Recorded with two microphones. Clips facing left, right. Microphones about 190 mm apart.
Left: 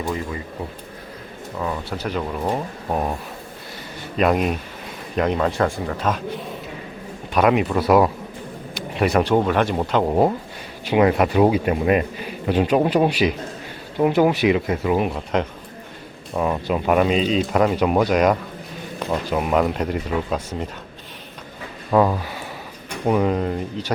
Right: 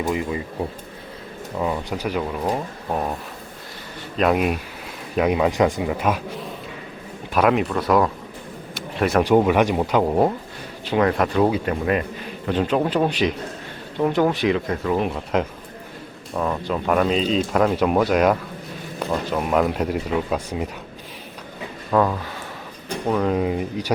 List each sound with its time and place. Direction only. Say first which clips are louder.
0.0 s speech: right 3 dB; 15° right (ahead or behind)
1.5 s speech: right 2 dB; 15° right (ahead or behind)
2.5 s speech: left 1 dB; 5° left (ahead or behind)
4.2 s speech: even; 5° right (ahead or behind)
7.3 s speech: left 1 dB; centre (ahead or behind)
8.7 s a sound: left 1 dB; centre (ahead or behind)
9.2 s speech: right 2 dB; 10° right (ahead or behind)
10.1 s a man's voice: left 1 dB; 5° left (ahead or behind)
16.3 s speech: left 2 dB; 10° left (ahead or behind); by 20.7 s 5° right (ahead or behind)
21.8 s a man's voice: left 2 dB; 15° left (ahead or behind)
23.3 s speech: right 1 dB; 5° right (ahead or behind)